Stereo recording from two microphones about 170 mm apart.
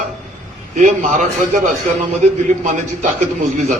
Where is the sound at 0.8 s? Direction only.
45° right (ahead or behind).